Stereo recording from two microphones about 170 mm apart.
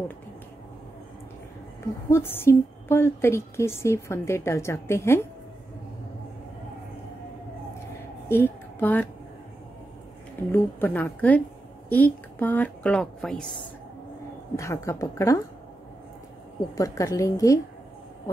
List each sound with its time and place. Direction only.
2.0 s a woman's voice: 15° left (ahead or behind)
8.3 s a woman's voice: 15° left (ahead or behind)
10.5 s a woman's voice: 10° left (ahead or behind)
14.6 s a woman's voice: 15° left (ahead or behind)
16.7 s a woman's voice: 20° left (ahead or behind)